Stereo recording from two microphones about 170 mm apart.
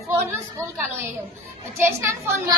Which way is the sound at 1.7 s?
15° right (ahead or behind).